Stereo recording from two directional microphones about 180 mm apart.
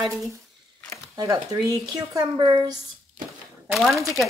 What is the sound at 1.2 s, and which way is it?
Speech, 20° right (ahead or behind).